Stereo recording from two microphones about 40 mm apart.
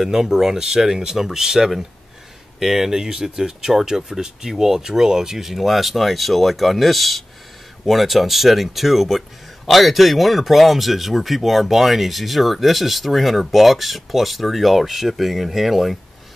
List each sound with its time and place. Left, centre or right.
0.0 s speech: centre